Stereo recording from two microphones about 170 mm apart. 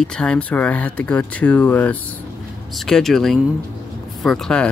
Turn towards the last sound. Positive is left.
turn(degrees=5)  # may be behind; listen again after turning